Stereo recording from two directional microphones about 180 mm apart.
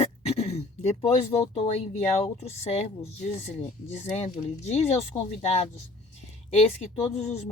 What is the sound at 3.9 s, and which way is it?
Speech, 35° left (ahead or behind).